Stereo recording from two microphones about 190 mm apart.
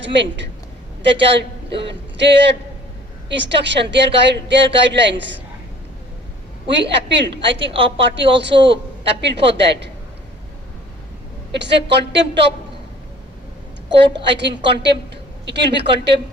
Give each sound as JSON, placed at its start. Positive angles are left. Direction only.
{"t": 0.0, "sound": "a woman's voice", "side_deg": -70}
{"t": 6.7, "sound": "a woman's voice", "side_deg": -65}
{"t": 7.6, "sound": "a woman's voice", "side_deg": -30}
{"t": 8.0, "sound": "a woman's voice", "side_deg": -70}
{"t": 11.5, "sound": "a woman's voice", "side_deg": -65}
{"t": 14.3, "sound": "a woman's voice", "side_deg": -65}